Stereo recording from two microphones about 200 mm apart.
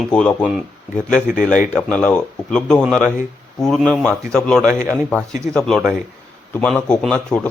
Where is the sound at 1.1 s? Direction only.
40° left (ahead or behind).